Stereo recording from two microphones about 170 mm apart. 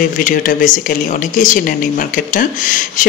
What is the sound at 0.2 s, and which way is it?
Speech, 50° left (ahead or behind).